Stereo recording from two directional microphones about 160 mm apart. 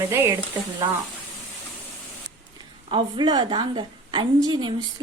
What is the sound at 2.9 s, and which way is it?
Speech, 30° right (ahead or behind).